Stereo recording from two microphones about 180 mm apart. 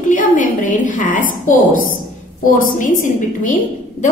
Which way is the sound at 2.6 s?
50° left (ahead or behind).